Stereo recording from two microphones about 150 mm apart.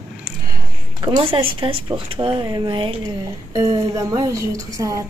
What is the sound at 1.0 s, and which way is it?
Speech, 35° right (ahead or behind).